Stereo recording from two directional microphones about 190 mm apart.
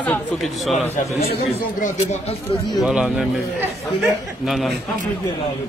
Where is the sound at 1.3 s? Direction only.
45° left (ahead or behind).